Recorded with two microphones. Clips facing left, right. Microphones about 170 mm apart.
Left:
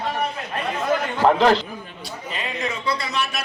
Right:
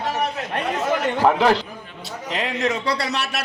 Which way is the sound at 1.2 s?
10° right (ahead or behind).